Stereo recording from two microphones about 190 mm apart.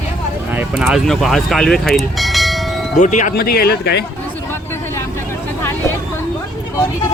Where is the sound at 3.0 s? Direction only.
40° left (ahead or behind); by 4.0 s 60° left (ahead or behind).